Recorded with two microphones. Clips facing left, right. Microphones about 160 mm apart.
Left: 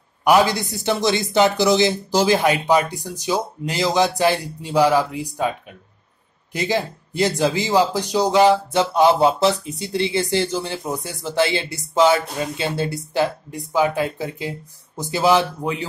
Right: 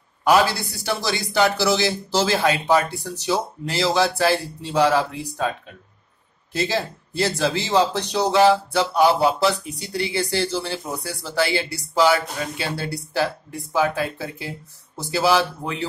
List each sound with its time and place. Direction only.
0.2 s speech: 20° left (ahead or behind)
6.5 s speech: 15° left (ahead or behind)